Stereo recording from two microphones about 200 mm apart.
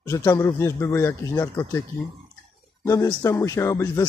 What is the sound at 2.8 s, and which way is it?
Speech, 15° left (ahead or behind).